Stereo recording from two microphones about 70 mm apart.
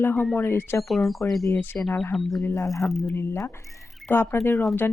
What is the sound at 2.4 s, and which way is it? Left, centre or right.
Speech, left.